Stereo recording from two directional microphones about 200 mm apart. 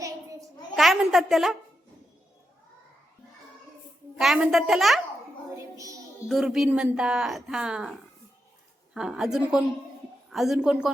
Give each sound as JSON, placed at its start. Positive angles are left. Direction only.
{"t": 0.8, "sound": "a woman's voice", "side_deg": 0}
{"t": 4.2, "sound": "speech", "side_deg": 0}
{"t": 5.7, "sound": "a child's voice", "side_deg": -15}
{"t": 6.2, "sound": "speech", "side_deg": 0}